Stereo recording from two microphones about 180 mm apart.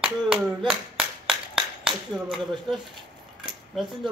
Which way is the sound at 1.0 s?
5° right (ahead or behind).